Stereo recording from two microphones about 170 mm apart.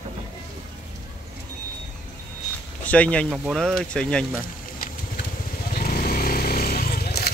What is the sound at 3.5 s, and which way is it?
Speech, 5° left (ahead or behind).